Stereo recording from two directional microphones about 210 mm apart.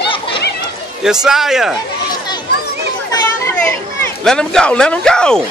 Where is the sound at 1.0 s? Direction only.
Centre (ahead or behind).